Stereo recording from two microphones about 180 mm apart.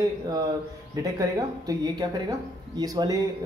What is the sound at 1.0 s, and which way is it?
Speech, 20° right (ahead or behind).